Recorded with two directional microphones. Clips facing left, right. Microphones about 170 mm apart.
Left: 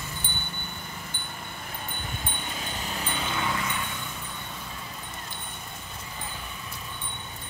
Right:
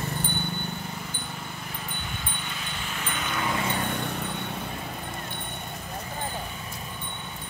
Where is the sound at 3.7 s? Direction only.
60° right (ahead or behind).